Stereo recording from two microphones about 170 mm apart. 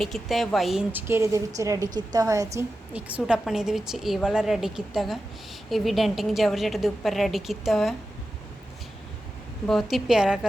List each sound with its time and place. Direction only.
0.0 s a woman's voice: centre (ahead or behind); by 2.6 s 20° right (ahead or behind)
2.9 s a woman's voice: 5° right (ahead or behind)
9.6 s a woman's voice: centre (ahead or behind)